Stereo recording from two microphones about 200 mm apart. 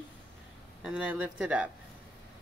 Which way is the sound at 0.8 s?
5° right (ahead or behind).